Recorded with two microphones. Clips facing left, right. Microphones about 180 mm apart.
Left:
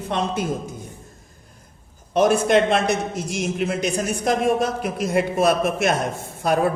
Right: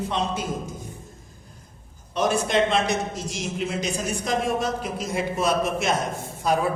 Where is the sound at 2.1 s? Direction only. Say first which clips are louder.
Left 6 dB; 60° left (ahead or behind).